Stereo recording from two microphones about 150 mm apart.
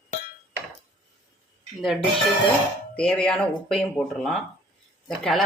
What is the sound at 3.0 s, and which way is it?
Speech, 5° left (ahead or behind).